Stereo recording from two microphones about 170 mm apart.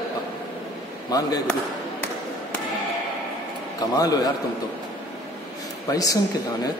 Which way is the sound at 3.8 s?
20° left (ahead or behind).